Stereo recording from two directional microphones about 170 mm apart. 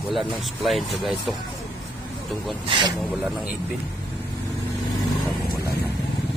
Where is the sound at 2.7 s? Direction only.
25° right (ahead or behind).